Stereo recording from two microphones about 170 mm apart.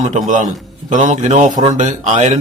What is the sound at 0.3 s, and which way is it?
A man's voice, 45° right (ahead or behind).